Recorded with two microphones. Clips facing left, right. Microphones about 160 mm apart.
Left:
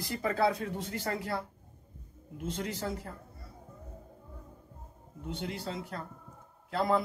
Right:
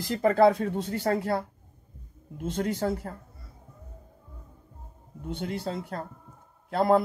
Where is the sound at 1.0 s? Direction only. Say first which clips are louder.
Right 9 dB; 60° right (ahead or behind).